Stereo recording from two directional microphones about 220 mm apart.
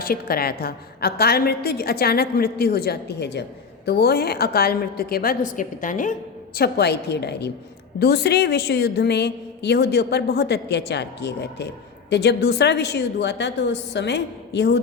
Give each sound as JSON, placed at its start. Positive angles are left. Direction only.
{"t": 0.0, "sound": "a woman's voice", "side_deg": 40}
{"t": 6.6, "sound": "a woman's voice", "side_deg": 50}